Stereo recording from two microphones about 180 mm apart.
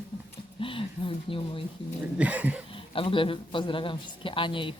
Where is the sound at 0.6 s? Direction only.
30° left (ahead or behind).